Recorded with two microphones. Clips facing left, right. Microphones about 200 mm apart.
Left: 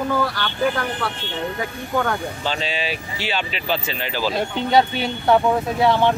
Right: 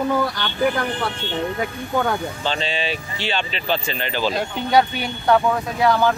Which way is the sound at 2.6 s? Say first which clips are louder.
Right 1 dB; 5° left (ahead or behind).